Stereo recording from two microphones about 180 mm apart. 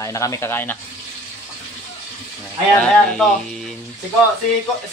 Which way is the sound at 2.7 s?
5° left (ahead or behind).